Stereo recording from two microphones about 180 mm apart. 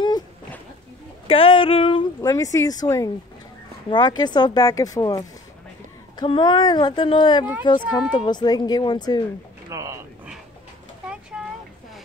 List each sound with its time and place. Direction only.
1.2 s speech: 30° left (ahead or behind)
2.3 s speech: 20° left (ahead or behind)
4.2 s speech: 25° left (ahead or behind)
9.7 s a sound: 15° right (ahead or behind)
11.3 s boat: 5° right (ahead or behind)